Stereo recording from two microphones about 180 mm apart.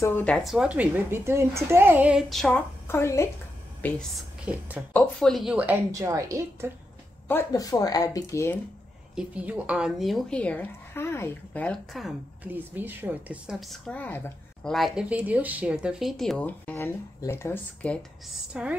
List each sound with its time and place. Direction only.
0.0 s a woman's voice: 10° left (ahead or behind)
2.9 s a woman's voice: 15° left (ahead or behind)
3.8 s speech: centre (ahead or behind)
5.9 s a woman's voice: 15° right (ahead or behind)
7.2 s speech: 15° left (ahead or behind)
9.1 s speech: 5° right (ahead or behind)
12.4 s speech: 10° right (ahead or behind); by 14.7 s 10° left (ahead or behind)
14.7 s speech: centre (ahead or behind); by 17.9 s 15° left (ahead or behind)
18.5 s speech: 5° right (ahead or behind)